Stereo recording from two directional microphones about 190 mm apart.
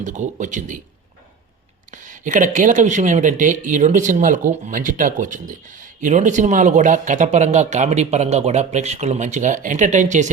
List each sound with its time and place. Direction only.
0.0 s speech: 40° right (ahead or behind)
1.9 s speech: 40° right (ahead or behind)